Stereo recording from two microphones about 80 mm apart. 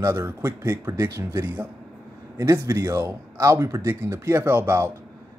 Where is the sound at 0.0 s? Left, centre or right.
Right.